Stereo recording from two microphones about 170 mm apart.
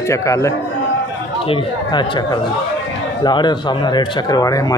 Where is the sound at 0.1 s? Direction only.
20° left (ahead or behind).